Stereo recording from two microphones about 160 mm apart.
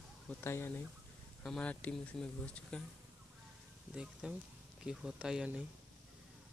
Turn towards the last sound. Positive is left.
turn(degrees=-5)  # may be behind; listen again after turning